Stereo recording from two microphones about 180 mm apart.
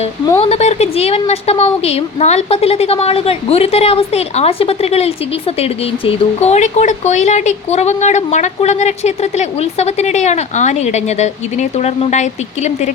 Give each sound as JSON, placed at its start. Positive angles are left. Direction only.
{"t": 0.3, "sound": "a woman's voice", "side_deg": 35}